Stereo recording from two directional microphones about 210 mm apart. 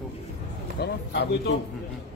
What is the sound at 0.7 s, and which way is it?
Speech, 50° left (ahead or behind).